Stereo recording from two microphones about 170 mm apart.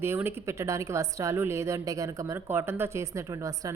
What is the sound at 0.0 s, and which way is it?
A woman's voice, 15° right (ahead or behind).